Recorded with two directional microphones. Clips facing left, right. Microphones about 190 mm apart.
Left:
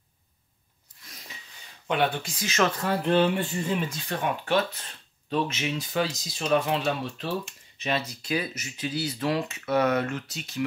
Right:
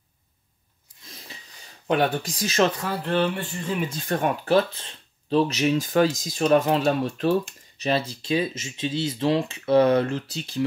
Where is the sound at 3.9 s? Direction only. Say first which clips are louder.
Right 5 dB; 40° right (ahead or behind).